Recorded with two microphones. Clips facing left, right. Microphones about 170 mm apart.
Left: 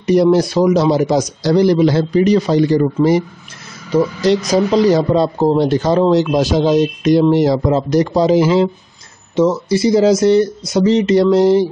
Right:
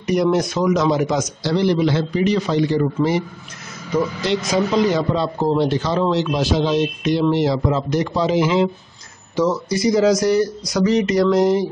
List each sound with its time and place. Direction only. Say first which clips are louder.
0.0 s a man's voice: left 6 dB; 30° left (ahead or behind)
9.3 s speech: left 5 dB; 25° left (ahead or behind)